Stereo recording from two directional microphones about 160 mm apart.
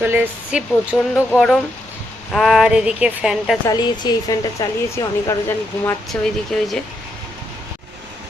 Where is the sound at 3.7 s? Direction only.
25° left (ahead or behind).